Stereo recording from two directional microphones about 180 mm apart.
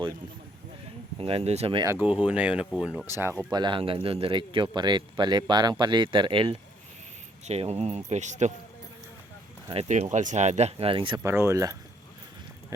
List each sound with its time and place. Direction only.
1.2 s speech: 30° right (ahead or behind)
1.8 s speech: 15° right (ahead or behind)
2.0 s speech: 5° right (ahead or behind)
3.5 s speech: 25° right (ahead or behind)
7.4 s speech: 35° right (ahead or behind)
9.6 s speech: 35° right (ahead or behind)
11.2 s speech: 15° right (ahead or behind)